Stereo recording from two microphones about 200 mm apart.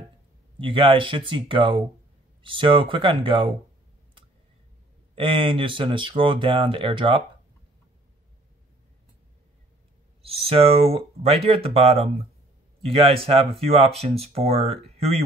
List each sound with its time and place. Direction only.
0.6 s speech: 25° right (ahead or behind)
5.1 s speech: 25° right (ahead or behind)
10.2 s speech: 30° right (ahead or behind)